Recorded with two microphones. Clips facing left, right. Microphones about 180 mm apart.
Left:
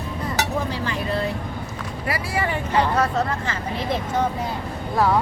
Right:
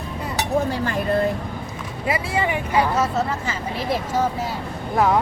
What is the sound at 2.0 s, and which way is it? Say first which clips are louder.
Speech: right 3 dB; 20° right (ahead or behind).